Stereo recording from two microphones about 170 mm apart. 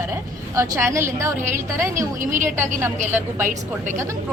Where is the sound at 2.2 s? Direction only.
50° right (ahead or behind).